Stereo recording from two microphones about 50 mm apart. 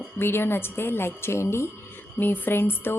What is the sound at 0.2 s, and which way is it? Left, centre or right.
Speech, left.